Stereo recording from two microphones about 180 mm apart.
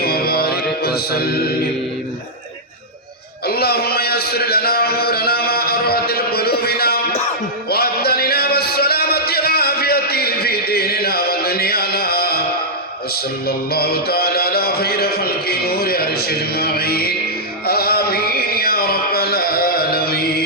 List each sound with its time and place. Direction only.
0.0 s music: 60° left (ahead or behind)
3.4 s a man's voice: 60° left (ahead or behind)
7.7 s music: 60° left (ahead or behind)
13.7 s a man's voice: 60° left (ahead or behind)
17.7 s a sound: 60° left (ahead or behind)